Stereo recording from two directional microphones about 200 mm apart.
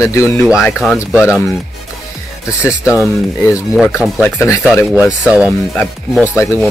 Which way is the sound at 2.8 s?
5° right (ahead or behind).